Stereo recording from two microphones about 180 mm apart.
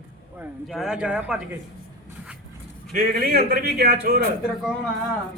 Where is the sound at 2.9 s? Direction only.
55° right (ahead or behind).